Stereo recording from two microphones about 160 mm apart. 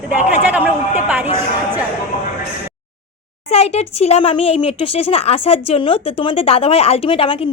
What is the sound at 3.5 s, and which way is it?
Speech, 40° left (ahead or behind).